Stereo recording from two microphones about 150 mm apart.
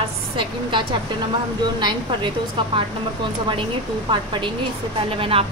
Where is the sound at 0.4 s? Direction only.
35° right (ahead or behind).